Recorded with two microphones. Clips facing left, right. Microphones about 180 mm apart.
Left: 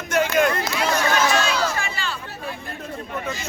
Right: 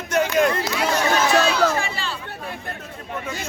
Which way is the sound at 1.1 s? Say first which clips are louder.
Right 2 dB; 35° right (ahead or behind).